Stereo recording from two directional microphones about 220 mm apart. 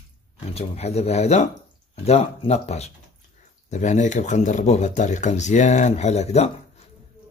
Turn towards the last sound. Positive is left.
turn(degrees=30)  # may be behind; listen again after turning